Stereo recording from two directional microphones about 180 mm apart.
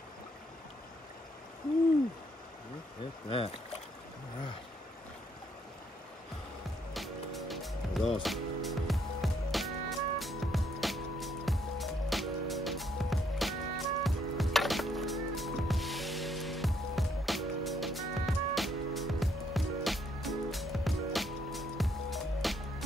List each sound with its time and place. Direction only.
3.3 s speech: 30° left (ahead or behind)
6.9 s music: centre (ahead or behind)